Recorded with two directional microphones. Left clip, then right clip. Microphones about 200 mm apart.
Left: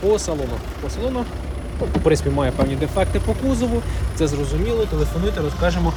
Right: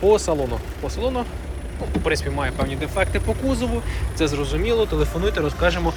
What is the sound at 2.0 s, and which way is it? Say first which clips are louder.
Speech: left 5 dB; 25° left (ahead or behind).